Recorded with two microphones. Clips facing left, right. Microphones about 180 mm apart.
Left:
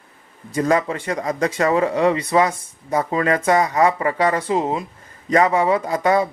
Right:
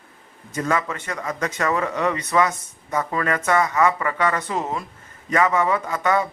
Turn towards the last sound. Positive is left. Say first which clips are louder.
# left 4 dB
turn(degrees=35)  # may be behind; listen again after turning